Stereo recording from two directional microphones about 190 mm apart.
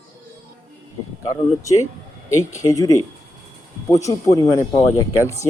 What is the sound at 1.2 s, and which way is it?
Speech, 15° left (ahead or behind).